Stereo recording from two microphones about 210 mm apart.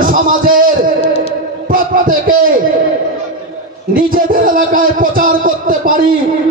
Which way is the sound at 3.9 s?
40° right (ahead or behind).